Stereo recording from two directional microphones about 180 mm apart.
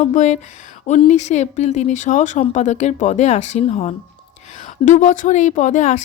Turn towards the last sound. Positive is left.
turn(degrees=40)  # may be behind; listen again after turning